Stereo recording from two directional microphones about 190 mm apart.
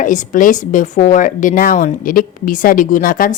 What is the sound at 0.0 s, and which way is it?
A woman's voice, 40° left (ahead or behind).